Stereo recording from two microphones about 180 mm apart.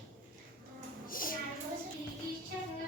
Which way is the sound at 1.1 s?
50° left (ahead or behind).